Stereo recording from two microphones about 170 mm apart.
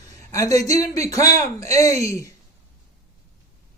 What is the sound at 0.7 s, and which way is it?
Speech, 20° left (ahead or behind).